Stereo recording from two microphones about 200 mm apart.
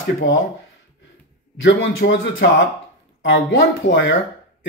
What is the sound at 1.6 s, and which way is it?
Speech, 70° left (ahead or behind).